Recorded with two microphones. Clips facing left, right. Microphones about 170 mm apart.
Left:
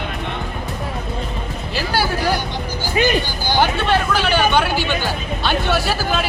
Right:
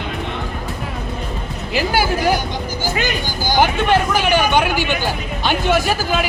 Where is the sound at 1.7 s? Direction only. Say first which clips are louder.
Right 3 dB; 15° right (ahead or behind).